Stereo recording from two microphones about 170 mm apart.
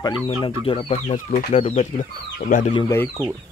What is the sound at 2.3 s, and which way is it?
Speech, 50° left (ahead or behind).